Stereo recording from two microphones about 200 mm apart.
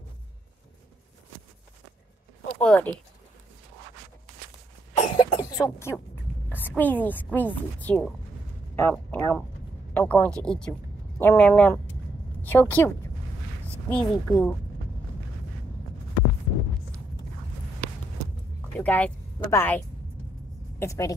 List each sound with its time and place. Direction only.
2.6 s speech: 5° left (ahead or behind)
5.1 s cough: 20° left (ahead or behind)
6.5 s a woman's voice: 10° left (ahead or behind)
18.8 s speech: 10° left (ahead or behind)
20.8 s speech: 15° left (ahead or behind)